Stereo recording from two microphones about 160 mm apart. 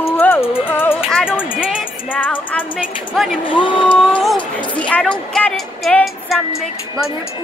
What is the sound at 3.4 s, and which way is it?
Speech, 30° left (ahead or behind).